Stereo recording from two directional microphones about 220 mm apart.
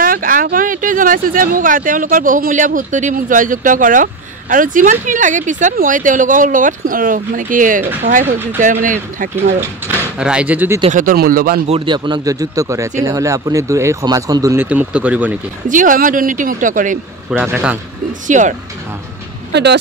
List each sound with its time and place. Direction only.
0.0 s speech: 40° right (ahead or behind)
10.1 s speech: 5° right (ahead or behind)
10.8 s speech: 35° right (ahead or behind)
11.7 s speech: 20° right (ahead or behind); by 15.3 s 5° right (ahead or behind)
15.7 s speech: 35° right (ahead or behind)
17.3 s speech: 5° right (ahead or behind)
18.2 s speech: 35° right (ahead or behind)
19.5 s speech: 50° right (ahead or behind)